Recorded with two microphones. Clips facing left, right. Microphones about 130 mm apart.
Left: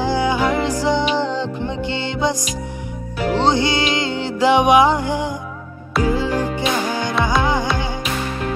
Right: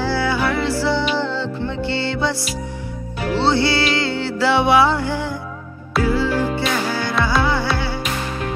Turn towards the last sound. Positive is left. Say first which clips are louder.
# left 1 dB
turn(degrees=15)  # may be behind; listen again after turning